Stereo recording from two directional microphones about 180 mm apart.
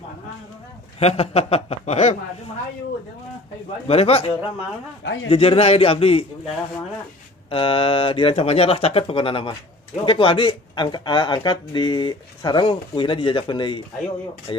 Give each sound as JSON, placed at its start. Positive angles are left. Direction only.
{"t": 0.9, "sound": "speech", "side_deg": 35}
{"t": 3.8, "sound": "speech", "side_deg": 35}
{"t": 5.0, "sound": "a man's voice", "side_deg": 90}
{"t": 5.3, "sound": "speech", "side_deg": 35}
{"t": 7.4, "sound": "a man's voice", "side_deg": 30}